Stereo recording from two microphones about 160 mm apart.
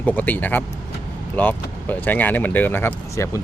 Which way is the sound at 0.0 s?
10° left (ahead or behind).